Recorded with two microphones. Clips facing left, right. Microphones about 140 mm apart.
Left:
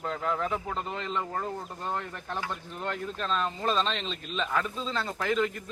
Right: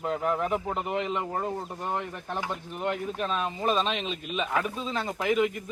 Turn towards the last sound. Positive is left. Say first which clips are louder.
# right 3 dB
turn(degrees=-10)  # may be behind; listen again after turning